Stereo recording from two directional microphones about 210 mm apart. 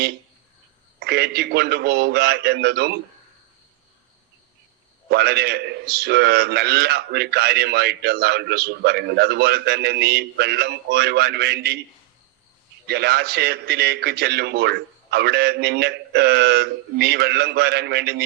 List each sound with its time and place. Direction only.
0.9 s a man's voice: 50° right (ahead or behind)
5.1 s a man's voice: 50° right (ahead or behind)
12.9 s a man's voice: 50° right (ahead or behind)